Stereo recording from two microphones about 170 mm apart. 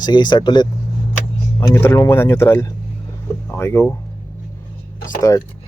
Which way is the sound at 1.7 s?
15° left (ahead or behind).